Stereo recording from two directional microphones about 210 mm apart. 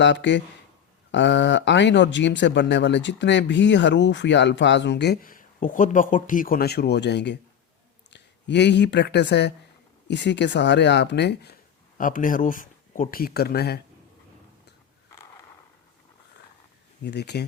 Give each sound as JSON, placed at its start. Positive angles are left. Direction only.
{"t": 0.0, "sound": "speech", "side_deg": 55}
{"t": 11.9, "sound": "speech", "side_deg": 40}
{"t": 17.0, "sound": "speech", "side_deg": 50}